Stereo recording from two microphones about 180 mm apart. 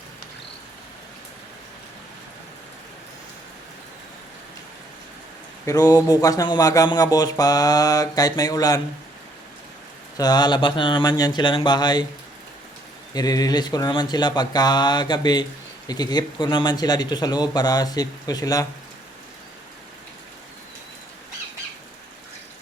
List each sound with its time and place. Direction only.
5.6 s speech: 20° left (ahead or behind)
10.2 s speech: 20° left (ahead or behind)
13.1 s speech: 20° left (ahead or behind)